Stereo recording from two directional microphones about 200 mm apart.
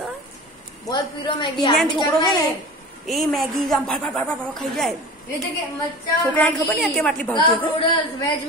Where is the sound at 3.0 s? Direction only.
Centre (ahead or behind).